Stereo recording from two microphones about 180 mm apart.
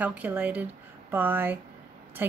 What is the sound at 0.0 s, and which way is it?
Speech, 10° right (ahead or behind).